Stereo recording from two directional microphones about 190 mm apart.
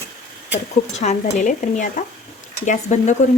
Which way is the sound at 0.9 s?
35° left (ahead or behind).